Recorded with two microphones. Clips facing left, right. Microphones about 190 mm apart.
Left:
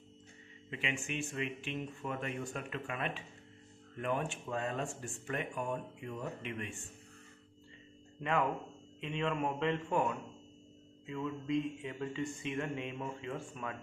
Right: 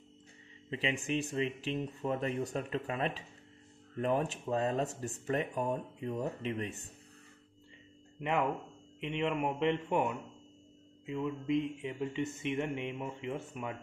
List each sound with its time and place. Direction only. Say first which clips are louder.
0.7 s speech: right 5 dB; 35° right (ahead or behind)
8.2 s speech: right 1 dB; 20° right (ahead or behind)